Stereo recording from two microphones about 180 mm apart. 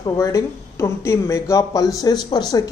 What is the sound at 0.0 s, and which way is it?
Speech, 20° left (ahead or behind).